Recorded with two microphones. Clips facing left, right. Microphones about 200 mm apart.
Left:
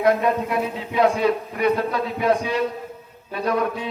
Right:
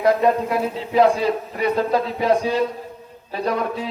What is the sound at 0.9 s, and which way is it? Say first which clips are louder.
A man's voice: right 2 dB; 30° right (ahead or behind).